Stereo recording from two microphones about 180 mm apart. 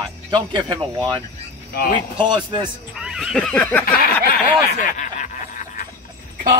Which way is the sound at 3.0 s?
5° right (ahead or behind).